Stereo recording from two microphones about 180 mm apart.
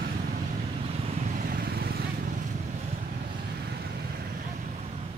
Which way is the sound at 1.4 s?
55° right (ahead or behind).